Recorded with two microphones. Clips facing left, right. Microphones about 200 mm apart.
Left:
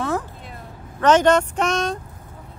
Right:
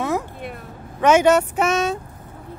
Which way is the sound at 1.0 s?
10° right (ahead or behind).